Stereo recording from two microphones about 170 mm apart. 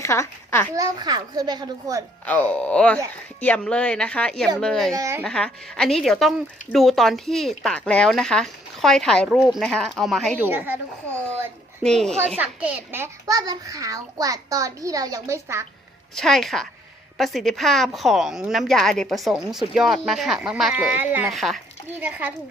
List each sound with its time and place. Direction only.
0.0 s a child's voice: 15° left (ahead or behind)
0.8 s a child's voice: 25° right (ahead or behind)
2.2 s a woman's voice: 10° left (ahead or behind)
4.9 s a woman's voice: 15° right (ahead or behind)
5.2 s a woman's voice: 5° left (ahead or behind)
10.3 s a woman's voice: 10° right (ahead or behind)
11.8 s a woman's voice: 5° left (ahead or behind)
12.4 s a child's voice: 10° right (ahead or behind)
16.1 s a woman's voice: centre (ahead or behind)
21.2 s a woman's voice: centre (ahead or behind)